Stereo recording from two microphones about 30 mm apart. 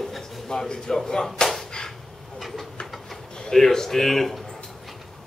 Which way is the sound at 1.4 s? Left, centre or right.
Centre.